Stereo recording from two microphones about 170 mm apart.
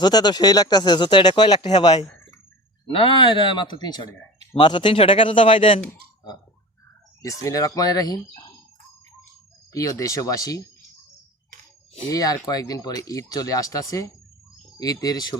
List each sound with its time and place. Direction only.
0.0 s speech: 25° left (ahead or behind)
2.9 s speech: 30° left (ahead or behind)
7.2 s speech: 20° left (ahead or behind)
9.7 s speech: 20° left (ahead or behind)
12.0 s speech: 20° left (ahead or behind)